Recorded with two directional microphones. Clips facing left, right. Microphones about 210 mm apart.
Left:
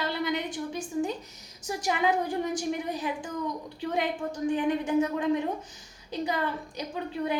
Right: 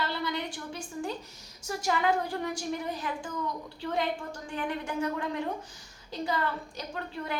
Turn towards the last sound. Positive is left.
turn(degrees=15)  # may be behind; listen again after turning